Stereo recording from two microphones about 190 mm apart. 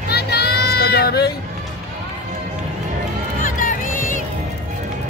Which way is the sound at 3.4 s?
45° left (ahead or behind).